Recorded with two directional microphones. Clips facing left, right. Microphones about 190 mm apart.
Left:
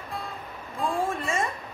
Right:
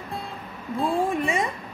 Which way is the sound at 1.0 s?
15° right (ahead or behind).